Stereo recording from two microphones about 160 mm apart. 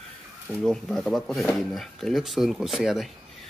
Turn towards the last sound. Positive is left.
turn(degrees=0)  # may be behind; listen again after turning